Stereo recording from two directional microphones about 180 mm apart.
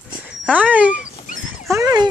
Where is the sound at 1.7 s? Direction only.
20° right (ahead or behind).